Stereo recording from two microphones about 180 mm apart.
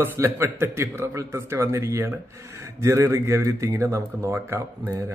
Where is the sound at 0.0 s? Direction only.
10° right (ahead or behind).